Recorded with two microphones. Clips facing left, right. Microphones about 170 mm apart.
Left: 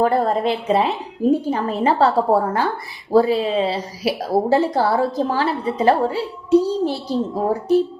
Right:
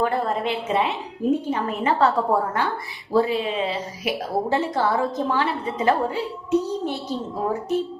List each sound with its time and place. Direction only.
0.0 s a woman's voice: 35° left (ahead or behind)